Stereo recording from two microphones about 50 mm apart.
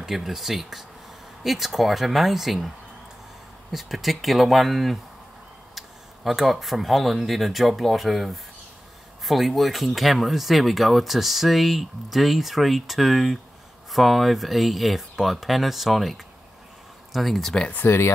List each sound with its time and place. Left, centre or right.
0.0 s speech: centre
3.7 s speech: centre
17.8 s speech: left